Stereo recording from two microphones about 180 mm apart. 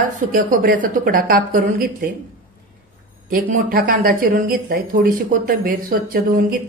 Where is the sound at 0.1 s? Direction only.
50° right (ahead or behind).